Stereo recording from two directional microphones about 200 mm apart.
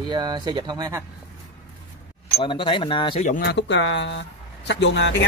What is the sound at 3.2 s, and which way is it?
Speech, 45° left (ahead or behind).